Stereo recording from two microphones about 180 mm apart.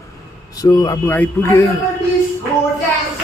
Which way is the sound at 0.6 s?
20° left (ahead or behind).